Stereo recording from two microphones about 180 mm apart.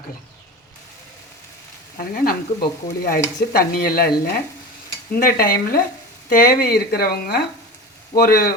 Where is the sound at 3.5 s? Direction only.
55° left (ahead or behind).